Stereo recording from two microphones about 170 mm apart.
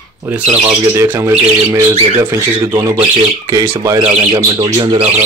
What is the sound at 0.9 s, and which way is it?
Speech, 15° right (ahead or behind).